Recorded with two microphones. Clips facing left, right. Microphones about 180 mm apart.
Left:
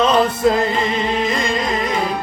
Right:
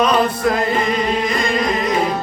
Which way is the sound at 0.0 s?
25° left (ahead or behind).